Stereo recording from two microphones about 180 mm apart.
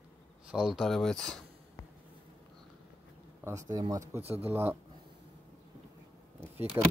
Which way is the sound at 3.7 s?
20° right (ahead or behind).